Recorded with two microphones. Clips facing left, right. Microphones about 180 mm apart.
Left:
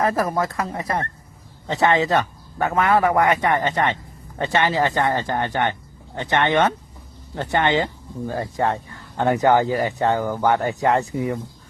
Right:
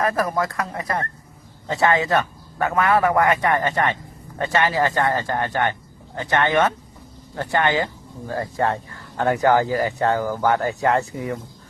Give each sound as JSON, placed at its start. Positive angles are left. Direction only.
{"t": 0.0, "sound": "speech", "side_deg": 25}